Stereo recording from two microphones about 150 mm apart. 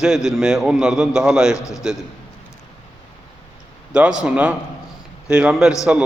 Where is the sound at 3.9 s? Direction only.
5° right (ahead or behind).